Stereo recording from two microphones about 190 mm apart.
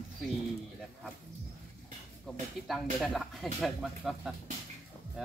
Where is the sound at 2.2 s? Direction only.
Centre (ahead or behind).